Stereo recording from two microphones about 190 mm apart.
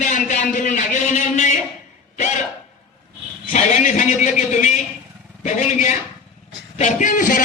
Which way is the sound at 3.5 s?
40° left (ahead or behind).